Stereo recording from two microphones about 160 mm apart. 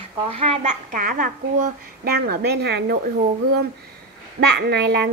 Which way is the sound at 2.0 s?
75° right (ahead or behind).